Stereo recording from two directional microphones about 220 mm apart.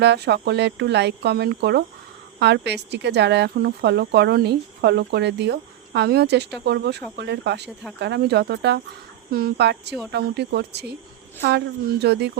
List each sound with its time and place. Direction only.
0.0 s speech: 50° right (ahead or behind)
12.0 s speech: 50° right (ahead or behind)